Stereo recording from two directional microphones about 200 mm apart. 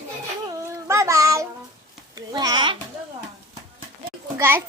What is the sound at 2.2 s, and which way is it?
Speech, 20° right (ahead or behind).